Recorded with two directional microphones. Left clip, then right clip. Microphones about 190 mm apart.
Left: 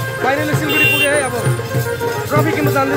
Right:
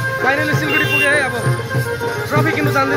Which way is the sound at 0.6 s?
15° left (ahead or behind).